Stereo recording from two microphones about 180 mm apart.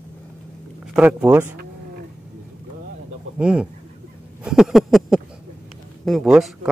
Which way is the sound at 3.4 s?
5° right (ahead or behind).